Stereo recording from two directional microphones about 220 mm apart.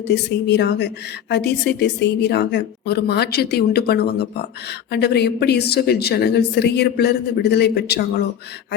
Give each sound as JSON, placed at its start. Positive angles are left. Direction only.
{"t": 0.1, "sound": "a woman's voice", "side_deg": 50}